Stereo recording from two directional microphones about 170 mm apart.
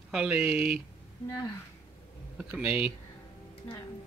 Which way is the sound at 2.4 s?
5° right (ahead or behind).